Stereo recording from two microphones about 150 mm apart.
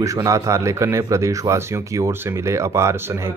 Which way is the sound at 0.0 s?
20° right (ahead or behind).